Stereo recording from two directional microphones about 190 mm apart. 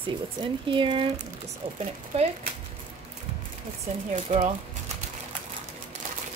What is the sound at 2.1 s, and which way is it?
Speech, 35° right (ahead or behind).